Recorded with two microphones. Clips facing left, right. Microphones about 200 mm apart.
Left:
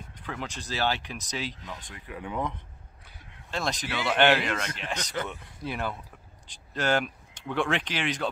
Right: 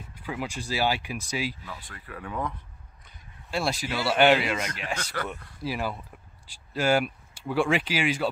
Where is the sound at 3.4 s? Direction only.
10° right (ahead or behind).